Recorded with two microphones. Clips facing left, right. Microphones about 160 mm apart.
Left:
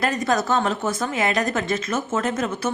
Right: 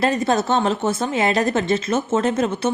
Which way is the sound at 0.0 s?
25° right (ahead or behind).